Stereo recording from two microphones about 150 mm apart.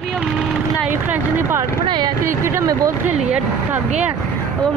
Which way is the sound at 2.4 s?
20° right (ahead or behind).